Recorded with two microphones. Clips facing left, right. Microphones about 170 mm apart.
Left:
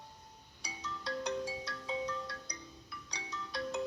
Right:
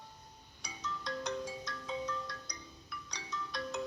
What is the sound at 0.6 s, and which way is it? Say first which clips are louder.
Music: even; 35° left (ahead or behind).